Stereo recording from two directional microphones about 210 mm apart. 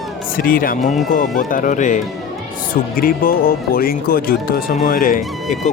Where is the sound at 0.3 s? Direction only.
45° left (ahead or behind).